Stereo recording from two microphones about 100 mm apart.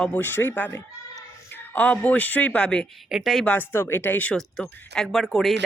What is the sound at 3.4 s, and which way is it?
Speech, 20° left (ahead or behind).